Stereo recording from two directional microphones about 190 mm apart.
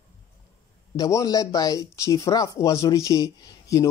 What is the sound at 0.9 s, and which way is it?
Speech, 15° left (ahead or behind).